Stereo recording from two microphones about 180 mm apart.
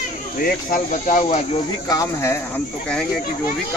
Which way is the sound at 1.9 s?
15° left (ahead or behind).